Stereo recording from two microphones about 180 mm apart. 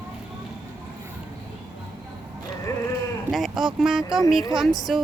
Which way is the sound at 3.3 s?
Centre (ahead or behind).